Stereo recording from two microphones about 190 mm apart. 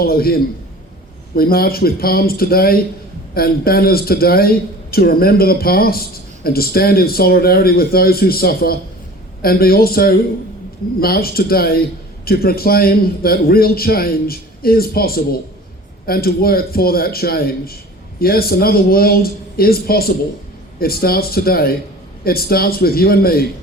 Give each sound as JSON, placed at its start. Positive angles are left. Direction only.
{"t": 0.0, "sound": "a man's voice", "side_deg": 55}